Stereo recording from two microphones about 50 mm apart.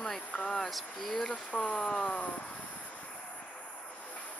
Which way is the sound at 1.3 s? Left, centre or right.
Centre.